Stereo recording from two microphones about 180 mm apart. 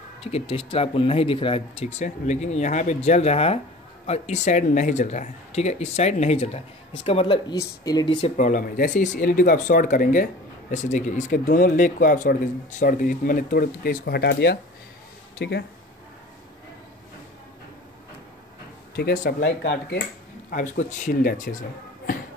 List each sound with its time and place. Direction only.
0.2 s speech: 30° left (ahead or behind)
8.4 s speech: 45° left (ahead or behind); by 15.6 s 70° left (ahead or behind)
18.9 s speech: 60° left (ahead or behind)
20.5 s speech: 45° left (ahead or behind)